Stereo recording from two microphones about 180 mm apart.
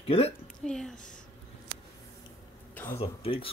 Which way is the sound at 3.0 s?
30° left (ahead or behind).